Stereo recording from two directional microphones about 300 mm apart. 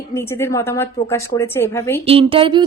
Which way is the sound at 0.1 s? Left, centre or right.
Centre.